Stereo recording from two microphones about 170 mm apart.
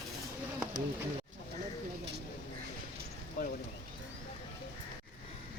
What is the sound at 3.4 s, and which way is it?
Clip-clop, 55° left (ahead or behind).